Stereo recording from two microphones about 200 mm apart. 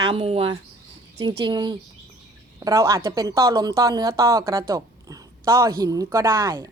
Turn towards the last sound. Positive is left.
turn(degrees=-15)  # may be behind; listen again after turning